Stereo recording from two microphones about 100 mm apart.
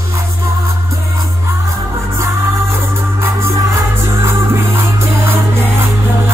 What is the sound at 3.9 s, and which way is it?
Music, 25° right (ahead or behind).